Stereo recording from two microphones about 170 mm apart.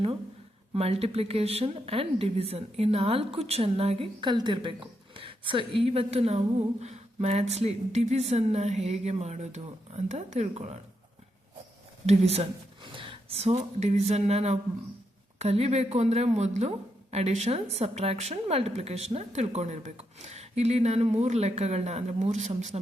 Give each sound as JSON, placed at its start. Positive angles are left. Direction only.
{"t": 0.7, "sound": "speech", "side_deg": -35}
{"t": 12.0, "sound": "speech", "side_deg": -40}